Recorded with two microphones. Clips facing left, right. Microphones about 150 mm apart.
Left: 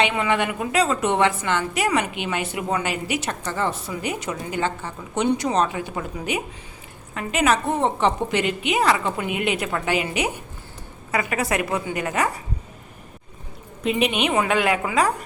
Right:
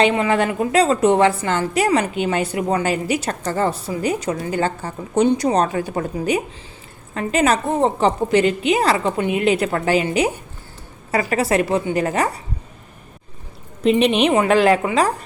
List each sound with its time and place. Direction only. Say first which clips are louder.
0.0 s a woman's voice: right 5 dB; 35° right (ahead or behind)
14.1 s a woman's voice: right 6 dB; 30° right (ahead or behind)